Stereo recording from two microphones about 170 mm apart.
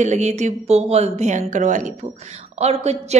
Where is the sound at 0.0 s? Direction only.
45° right (ahead or behind).